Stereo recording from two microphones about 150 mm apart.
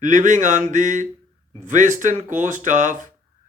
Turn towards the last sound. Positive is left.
turn(degrees=-60)  # may be behind; listen again after turning